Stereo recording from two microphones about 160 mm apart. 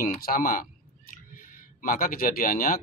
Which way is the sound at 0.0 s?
65° left (ahead or behind).